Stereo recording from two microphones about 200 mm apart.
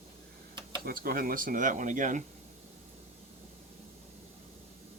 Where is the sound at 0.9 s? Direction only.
45° right (ahead or behind).